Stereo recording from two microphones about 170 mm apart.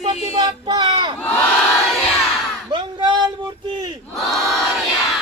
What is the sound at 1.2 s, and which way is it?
Crowd, 5° left (ahead or behind).